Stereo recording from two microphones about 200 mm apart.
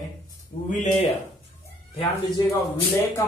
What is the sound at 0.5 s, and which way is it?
Speech, 50° left (ahead or behind).